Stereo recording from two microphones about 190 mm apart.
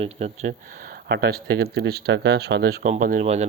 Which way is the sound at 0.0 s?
35° right (ahead or behind).